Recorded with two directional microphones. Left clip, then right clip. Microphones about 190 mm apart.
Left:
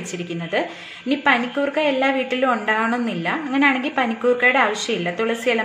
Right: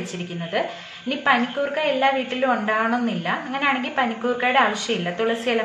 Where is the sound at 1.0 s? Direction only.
45° left (ahead or behind).